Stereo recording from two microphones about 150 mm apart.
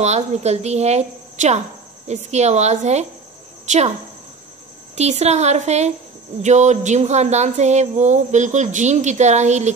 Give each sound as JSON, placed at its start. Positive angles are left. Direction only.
{"t": 0.0, "sound": "a woman's voice", "side_deg": -45}
{"t": 4.9, "sound": "speech", "side_deg": -45}